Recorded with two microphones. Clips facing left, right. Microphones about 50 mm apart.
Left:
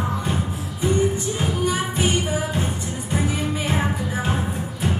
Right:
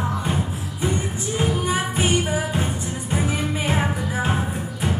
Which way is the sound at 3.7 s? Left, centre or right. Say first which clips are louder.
Right 1 dB; centre.